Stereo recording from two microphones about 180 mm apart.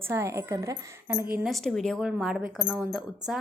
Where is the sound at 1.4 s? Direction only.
Centre (ahead or behind).